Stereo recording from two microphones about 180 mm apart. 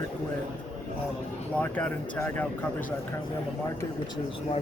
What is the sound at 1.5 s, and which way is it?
Speech, 10° left (ahead or behind).